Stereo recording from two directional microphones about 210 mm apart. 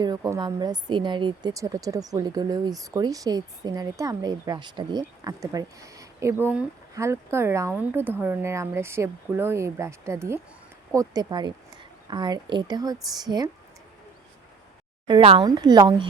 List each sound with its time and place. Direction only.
0.0 s a woman's voice: 15° right (ahead or behind)
15.0 s speech: 25° right (ahead or behind)